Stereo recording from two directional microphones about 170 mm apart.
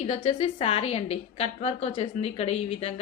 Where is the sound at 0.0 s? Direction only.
35° left (ahead or behind).